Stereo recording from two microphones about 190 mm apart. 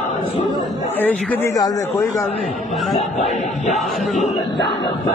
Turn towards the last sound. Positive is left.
turn(degrees=0)  # may be behind; listen again after turning